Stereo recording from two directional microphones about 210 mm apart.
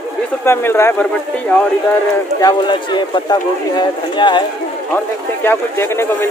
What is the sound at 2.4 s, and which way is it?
Speech, 20° left (ahead or behind).